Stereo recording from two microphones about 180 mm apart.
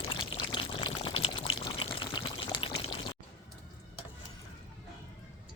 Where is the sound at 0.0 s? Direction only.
30° left (ahead or behind).